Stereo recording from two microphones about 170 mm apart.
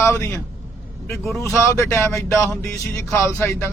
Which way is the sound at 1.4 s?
15° left (ahead or behind).